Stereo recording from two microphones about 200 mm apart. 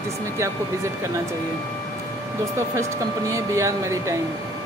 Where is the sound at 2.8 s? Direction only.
15° right (ahead or behind).